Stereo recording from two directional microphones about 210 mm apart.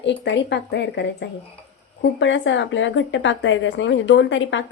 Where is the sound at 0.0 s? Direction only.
55° left (ahead or behind).